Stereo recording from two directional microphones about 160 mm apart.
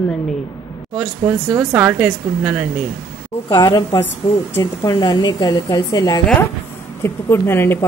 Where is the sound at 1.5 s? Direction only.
10° right (ahead or behind).